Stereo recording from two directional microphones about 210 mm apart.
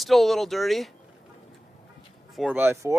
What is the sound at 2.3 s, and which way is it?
Speech, 5° right (ahead or behind).